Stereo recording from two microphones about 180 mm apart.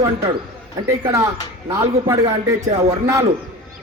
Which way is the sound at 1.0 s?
20° right (ahead or behind).